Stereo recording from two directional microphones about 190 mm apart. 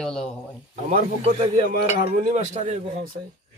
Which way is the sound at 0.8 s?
35° right (ahead or behind).